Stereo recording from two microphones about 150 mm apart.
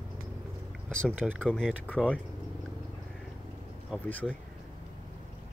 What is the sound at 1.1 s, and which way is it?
Speech, 10° right (ahead or behind).